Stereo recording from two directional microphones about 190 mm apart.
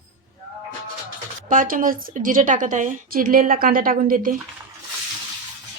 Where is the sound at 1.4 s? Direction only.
45° right (ahead or behind).